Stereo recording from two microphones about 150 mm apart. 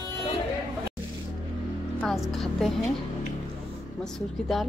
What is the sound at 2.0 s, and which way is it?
Speech, centre (ahead or behind).